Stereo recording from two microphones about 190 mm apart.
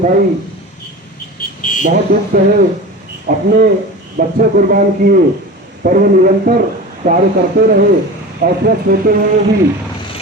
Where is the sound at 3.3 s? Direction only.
50° right (ahead or behind).